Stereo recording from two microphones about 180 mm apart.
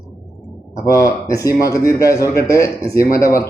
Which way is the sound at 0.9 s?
20° left (ahead or behind).